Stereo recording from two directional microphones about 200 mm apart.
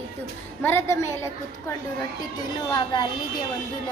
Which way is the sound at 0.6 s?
15° left (ahead or behind).